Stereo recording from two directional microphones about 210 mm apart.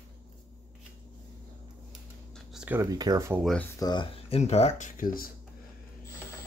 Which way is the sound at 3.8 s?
20° left (ahead or behind).